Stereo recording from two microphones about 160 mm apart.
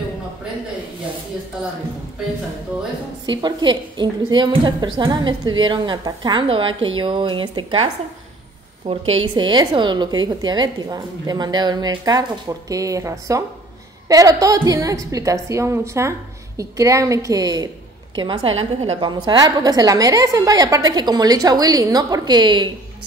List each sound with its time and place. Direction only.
3.3 s a woman's voice: 30° right (ahead or behind)